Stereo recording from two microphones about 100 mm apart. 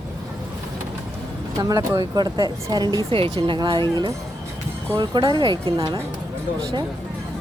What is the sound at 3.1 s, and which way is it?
Speech, 70° right (ahead or behind).